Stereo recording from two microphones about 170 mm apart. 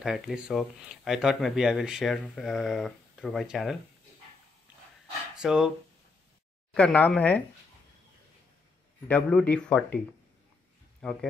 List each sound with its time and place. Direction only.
0.0 s speech: 5° right (ahead or behind)
4.7 s dog: 10° right (ahead or behind)
5.4 s speech: 5° right (ahead or behind)
6.7 s speech: 5° left (ahead or behind)
9.0 s speech: 10° left (ahead or behind)